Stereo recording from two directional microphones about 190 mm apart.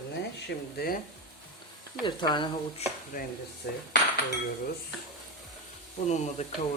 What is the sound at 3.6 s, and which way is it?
Cutlery, 65° left (ahead or behind).